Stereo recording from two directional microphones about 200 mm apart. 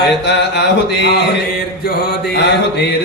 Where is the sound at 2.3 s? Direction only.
55° left (ahead or behind).